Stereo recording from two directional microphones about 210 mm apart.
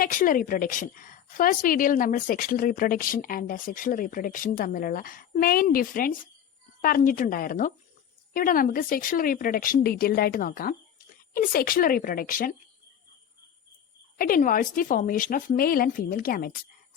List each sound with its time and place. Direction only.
0.0 s a woman's voice: 40° left (ahead or behind)
14.2 s a woman's voice: 40° left (ahead or behind)